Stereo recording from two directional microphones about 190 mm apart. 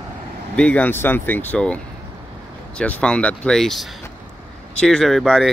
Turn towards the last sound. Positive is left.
turn(degrees=0)  # may be behind; listen again after turning